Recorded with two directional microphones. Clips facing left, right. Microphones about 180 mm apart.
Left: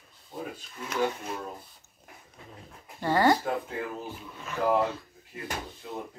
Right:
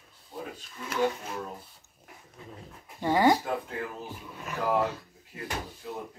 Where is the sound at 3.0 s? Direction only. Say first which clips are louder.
Even; 15° right (ahead or behind).